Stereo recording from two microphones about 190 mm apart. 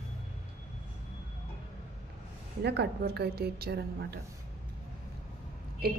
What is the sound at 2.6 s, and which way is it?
A woman's voice, 60° right (ahead or behind).